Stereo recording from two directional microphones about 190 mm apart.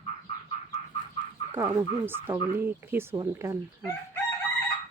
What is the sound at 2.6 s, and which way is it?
Speech, 10° right (ahead or behind).